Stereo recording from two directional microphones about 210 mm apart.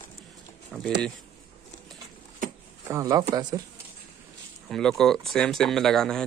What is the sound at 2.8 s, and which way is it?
Speech, 15° right (ahead or behind).